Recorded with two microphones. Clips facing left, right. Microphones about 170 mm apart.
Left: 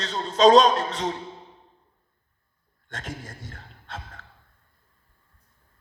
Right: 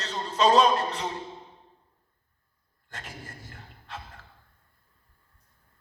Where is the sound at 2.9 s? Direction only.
90° left.